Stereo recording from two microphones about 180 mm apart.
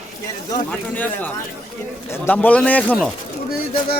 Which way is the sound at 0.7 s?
10° left (ahead or behind).